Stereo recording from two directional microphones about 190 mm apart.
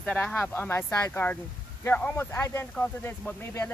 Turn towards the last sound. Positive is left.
turn(degrees=10)  # may be behind; listen again after turning